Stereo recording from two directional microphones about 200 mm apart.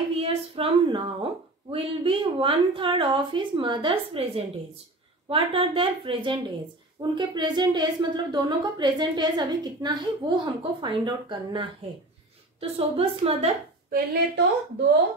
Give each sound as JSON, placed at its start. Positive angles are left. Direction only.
{"t": 0.2, "sound": "a woman's voice", "side_deg": -30}
{"t": 5.3, "sound": "a woman's voice", "side_deg": -25}
{"t": 13.8, "sound": "a woman's voice", "side_deg": -45}